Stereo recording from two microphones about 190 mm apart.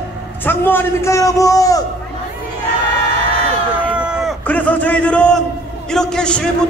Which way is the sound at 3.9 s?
5° right (ahead or behind).